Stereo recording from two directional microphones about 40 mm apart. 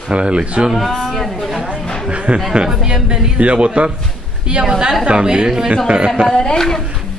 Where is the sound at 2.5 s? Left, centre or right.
Centre.